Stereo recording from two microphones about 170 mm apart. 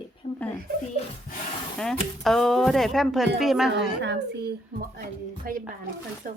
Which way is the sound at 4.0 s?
90° right.